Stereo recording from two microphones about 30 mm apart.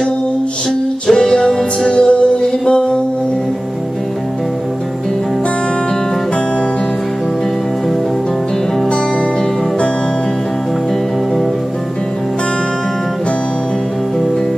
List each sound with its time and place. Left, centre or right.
1.0 s music: left
1.9 s music: left